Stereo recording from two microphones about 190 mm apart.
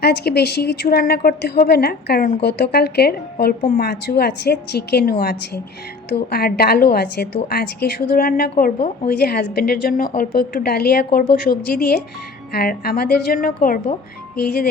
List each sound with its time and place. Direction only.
0.0 s a woman's voice: 55° left (ahead or behind)